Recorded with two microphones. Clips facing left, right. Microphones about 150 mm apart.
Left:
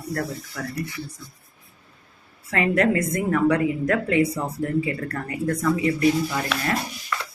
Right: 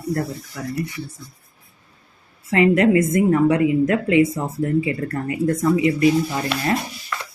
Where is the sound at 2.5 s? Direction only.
20° right (ahead or behind).